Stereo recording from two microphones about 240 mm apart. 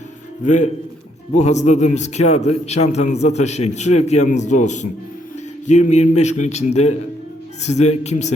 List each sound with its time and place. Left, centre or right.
0.4 s a man's voice: left